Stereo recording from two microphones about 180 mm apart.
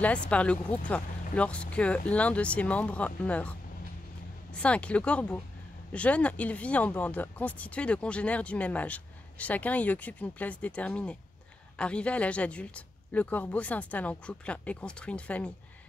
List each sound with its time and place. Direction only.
0.0 s speech: 5° left (ahead or behind)
4.6 s speech: 5° left (ahead or behind)